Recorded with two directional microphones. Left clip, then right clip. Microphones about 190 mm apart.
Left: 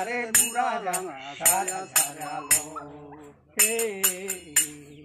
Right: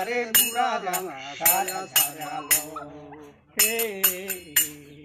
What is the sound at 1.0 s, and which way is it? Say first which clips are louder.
Music: right 2 dB; centre (ahead or behind).